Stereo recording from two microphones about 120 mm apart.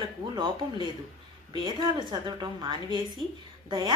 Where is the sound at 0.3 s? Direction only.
45° right (ahead or behind).